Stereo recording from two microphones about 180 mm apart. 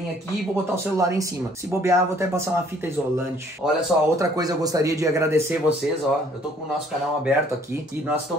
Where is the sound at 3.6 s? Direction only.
Centre (ahead or behind).